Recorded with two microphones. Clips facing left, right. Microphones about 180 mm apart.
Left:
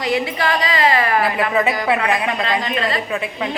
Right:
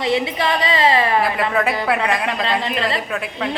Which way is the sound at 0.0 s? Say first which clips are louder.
Right 1 dB; 25° right (ahead or behind).